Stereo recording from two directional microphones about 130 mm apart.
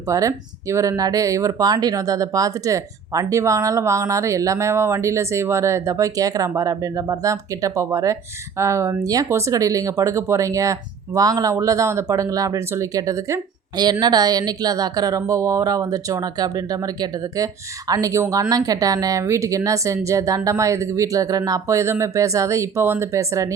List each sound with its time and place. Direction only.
0.1 s speech: 25° right (ahead or behind)